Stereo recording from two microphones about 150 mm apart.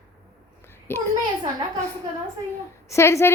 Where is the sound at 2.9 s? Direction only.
20° left (ahead or behind).